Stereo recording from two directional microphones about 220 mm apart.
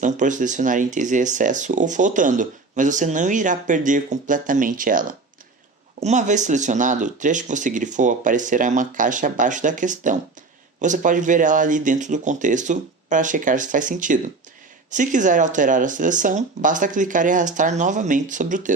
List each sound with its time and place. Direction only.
0.0 s speech: 35° right (ahead or behind)